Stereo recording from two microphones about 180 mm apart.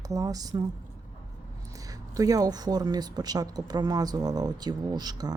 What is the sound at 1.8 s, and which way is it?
Speech, 20° right (ahead or behind).